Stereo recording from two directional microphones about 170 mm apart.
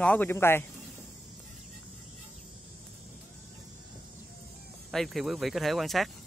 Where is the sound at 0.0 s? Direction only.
10° left (ahead or behind).